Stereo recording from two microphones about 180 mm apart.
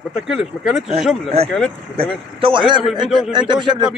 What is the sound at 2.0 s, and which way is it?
Speech, 30° right (ahead or behind).